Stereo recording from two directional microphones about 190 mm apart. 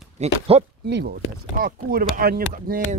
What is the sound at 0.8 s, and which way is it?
Speech, 60° right (ahead or behind).